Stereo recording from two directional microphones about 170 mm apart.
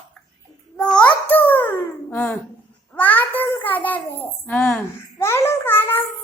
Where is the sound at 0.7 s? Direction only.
5° left (ahead or behind).